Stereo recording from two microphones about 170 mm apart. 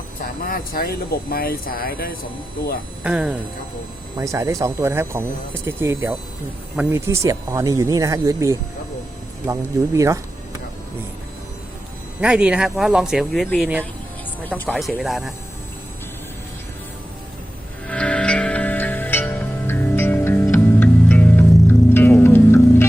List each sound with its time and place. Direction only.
0.2 s speech: 55° left (ahead or behind)
3.0 s speech: 5° right (ahead or behind)
4.2 s speech: 20° right (ahead or behind)
12.2 s speech: 5° right (ahead or behind)
17.8 s music: 5° left (ahead or behind)